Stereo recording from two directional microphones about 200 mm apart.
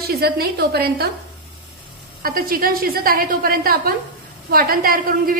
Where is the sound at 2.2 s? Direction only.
45° right (ahead or behind).